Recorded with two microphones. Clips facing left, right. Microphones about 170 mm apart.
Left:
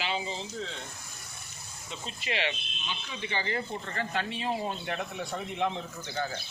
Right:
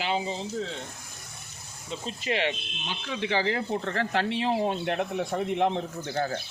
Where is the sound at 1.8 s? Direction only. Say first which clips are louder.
Right 6 dB; 40° right (ahead or behind).